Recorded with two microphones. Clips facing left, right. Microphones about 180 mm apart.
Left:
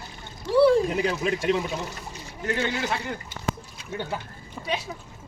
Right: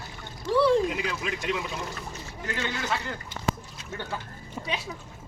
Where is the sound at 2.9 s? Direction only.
15° left (ahead or behind).